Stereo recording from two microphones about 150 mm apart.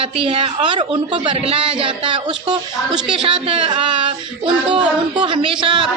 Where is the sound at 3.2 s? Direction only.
35° right (ahead or behind).